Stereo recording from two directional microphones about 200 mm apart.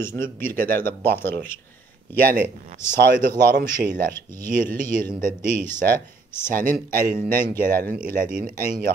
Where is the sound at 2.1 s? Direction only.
50° right (ahead or behind).